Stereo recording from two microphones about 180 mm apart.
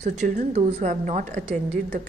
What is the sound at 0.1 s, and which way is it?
A woman's voice, 40° right (ahead or behind).